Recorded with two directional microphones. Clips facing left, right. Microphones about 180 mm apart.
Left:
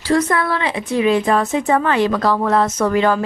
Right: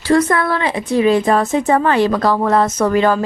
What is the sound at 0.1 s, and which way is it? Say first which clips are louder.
A woman's voice: right 3 dB; 55° right (ahead or behind).